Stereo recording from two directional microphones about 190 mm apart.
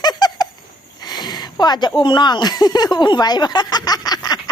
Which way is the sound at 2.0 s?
25° left (ahead or behind).